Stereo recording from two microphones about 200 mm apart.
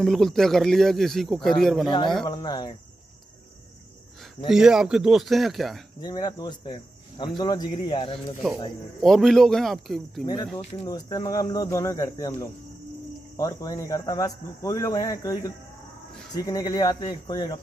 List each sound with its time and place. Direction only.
0.0 s a man's voice: centre (ahead or behind)
2.2 s speech: 20° left (ahead or behind)
4.5 s a man's voice: 5° right (ahead or behind)
5.9 s speech: 20° left (ahead or behind)
9.0 s a man's voice: centre (ahead or behind)
10.2 s speech: 20° left (ahead or behind)
13.4 s speech: 15° left (ahead or behind)